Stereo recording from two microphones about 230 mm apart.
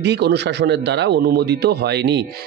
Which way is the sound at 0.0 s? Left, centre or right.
Right.